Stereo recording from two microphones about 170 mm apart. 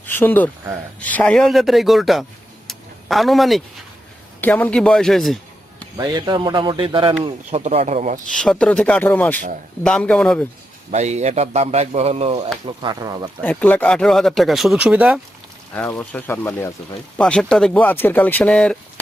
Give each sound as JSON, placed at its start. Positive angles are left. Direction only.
{"t": 0.0, "sound": "speech", "side_deg": 10}
{"t": 2.6, "sound": "a sound", "side_deg": 0}
{"t": 4.4, "sound": "speech", "side_deg": 10}
{"t": 6.0, "sound": "a man's voice", "side_deg": -25}
{"t": 8.3, "sound": "speech", "side_deg": 5}
{"t": 10.9, "sound": "a man's voice", "side_deg": -40}
{"t": 12.6, "sound": "a man's voice", "side_deg": -25}
{"t": 13.4, "sound": "speech", "side_deg": 10}
{"t": 15.7, "sound": "speech", "side_deg": 10}